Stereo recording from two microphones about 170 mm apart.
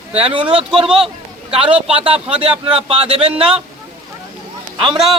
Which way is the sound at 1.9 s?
35° right (ahead or behind).